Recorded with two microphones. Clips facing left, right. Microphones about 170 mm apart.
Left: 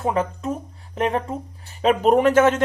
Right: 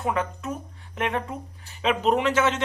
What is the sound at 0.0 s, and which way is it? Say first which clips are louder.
Speech: left 4 dB; 35° left (ahead or behind).